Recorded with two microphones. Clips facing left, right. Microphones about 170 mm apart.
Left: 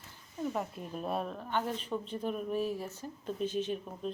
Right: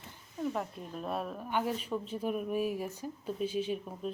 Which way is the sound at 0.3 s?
Centre (ahead or behind).